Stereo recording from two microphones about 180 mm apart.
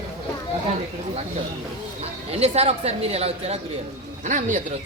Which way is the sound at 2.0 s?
35° right (ahead or behind).